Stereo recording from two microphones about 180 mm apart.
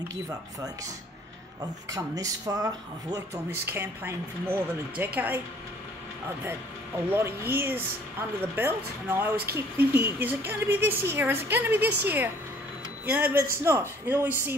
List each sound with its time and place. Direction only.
1.9 s speech: 20° right (ahead or behind)
7.1 s speech: 15° right (ahead or behind)
13.0 s speech: 10° right (ahead or behind)